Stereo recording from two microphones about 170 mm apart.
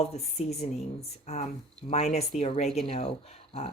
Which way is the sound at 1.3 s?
40° left (ahead or behind).